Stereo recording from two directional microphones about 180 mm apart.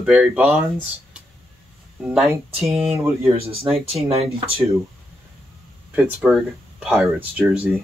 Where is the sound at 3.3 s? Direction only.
35° right (ahead or behind).